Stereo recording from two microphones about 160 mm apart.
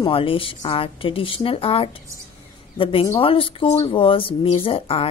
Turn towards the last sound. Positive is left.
turn(degrees=35)  # may be behind; listen again after turning